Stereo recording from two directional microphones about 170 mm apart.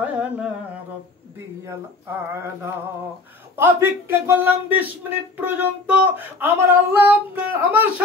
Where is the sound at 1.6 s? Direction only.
15° right (ahead or behind).